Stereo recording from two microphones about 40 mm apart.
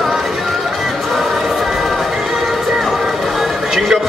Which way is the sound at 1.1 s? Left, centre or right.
Centre.